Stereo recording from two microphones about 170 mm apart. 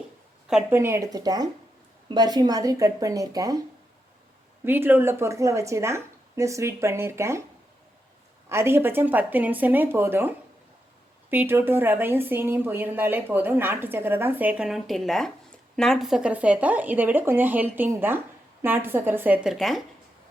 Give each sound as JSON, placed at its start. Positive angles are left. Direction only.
{"t": 0.4, "sound": "speech", "side_deg": -5}
{"t": 0.8, "sound": "speech", "side_deg": -15}
{"t": 4.6, "sound": "a woman's voice", "side_deg": -10}
{"t": 8.4, "sound": "a woman's voice", "side_deg": -15}